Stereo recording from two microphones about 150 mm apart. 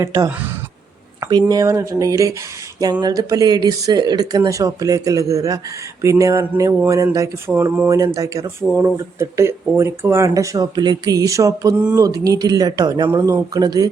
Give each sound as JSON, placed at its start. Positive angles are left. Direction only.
{"t": 0.0, "sound": "speech", "side_deg": -20}